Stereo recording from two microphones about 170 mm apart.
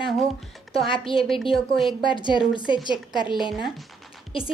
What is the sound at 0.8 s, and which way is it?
Speech, 30° left (ahead or behind).